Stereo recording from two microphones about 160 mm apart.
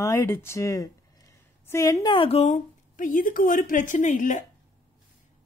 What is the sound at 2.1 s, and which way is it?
A woman's voice, 35° left (ahead or behind).